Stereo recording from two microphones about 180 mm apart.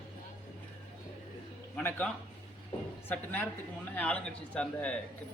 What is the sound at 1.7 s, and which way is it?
Speech, 5° left (ahead or behind).